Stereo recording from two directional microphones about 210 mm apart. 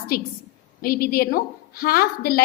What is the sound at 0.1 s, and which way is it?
A woman's voice, 45° left (ahead or behind).